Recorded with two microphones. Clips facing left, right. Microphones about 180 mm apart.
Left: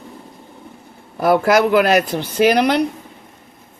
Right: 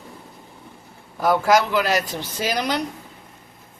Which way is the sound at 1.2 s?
60° left (ahead or behind).